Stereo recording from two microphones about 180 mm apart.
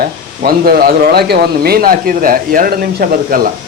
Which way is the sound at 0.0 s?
55° right (ahead or behind).